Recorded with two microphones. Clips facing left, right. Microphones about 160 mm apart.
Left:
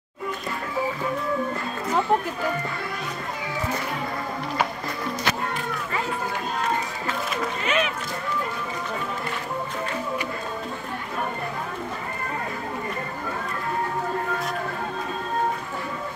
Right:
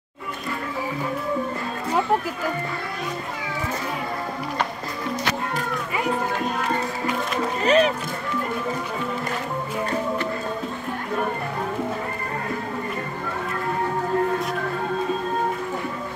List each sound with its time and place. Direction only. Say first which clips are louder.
7.6 s music: right 9 dB; 35° right (ahead or behind)